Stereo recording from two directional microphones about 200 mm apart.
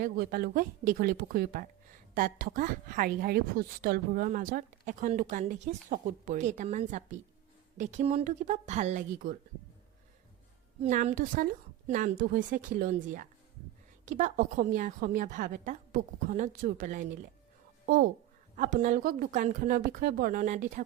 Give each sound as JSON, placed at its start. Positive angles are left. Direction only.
{"t": 0.0, "sound": "a woman's voice", "side_deg": -45}
{"t": 10.8, "sound": "a woman's voice", "side_deg": -40}